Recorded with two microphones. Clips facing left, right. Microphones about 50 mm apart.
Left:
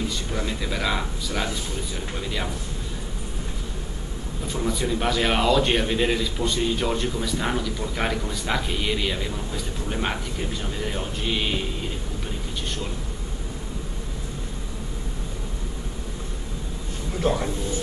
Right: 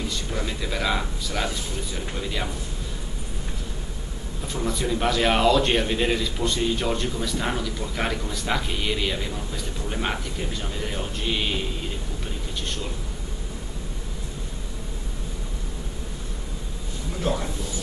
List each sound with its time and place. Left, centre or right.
0.3 s a man's voice: centre
4.5 s a man's voice: centre
17.2 s a man's voice: centre